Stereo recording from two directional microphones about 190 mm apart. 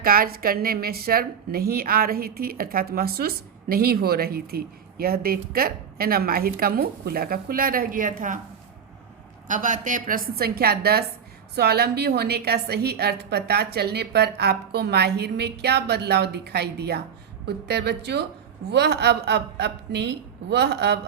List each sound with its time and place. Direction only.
0.0 s a woman's voice: 50° right (ahead or behind)
9.5 s a woman's voice: 45° right (ahead or behind); by 21.0 s 60° right (ahead or behind)